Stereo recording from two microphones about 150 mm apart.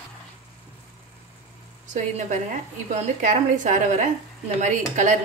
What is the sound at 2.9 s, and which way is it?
Speech, 55° right (ahead or behind).